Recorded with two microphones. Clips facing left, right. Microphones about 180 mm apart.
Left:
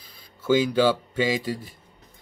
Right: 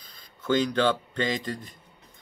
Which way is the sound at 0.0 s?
10° left (ahead or behind).